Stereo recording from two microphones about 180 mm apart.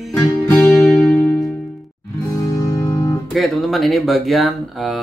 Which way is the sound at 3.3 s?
Centre (ahead or behind).